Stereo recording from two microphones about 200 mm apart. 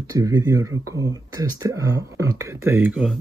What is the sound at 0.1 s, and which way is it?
Speech, 20° right (ahead or behind).